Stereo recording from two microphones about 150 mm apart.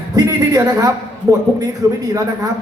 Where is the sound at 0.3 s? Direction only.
25° right (ahead or behind).